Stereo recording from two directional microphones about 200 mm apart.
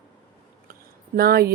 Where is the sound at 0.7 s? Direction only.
50° right (ahead or behind).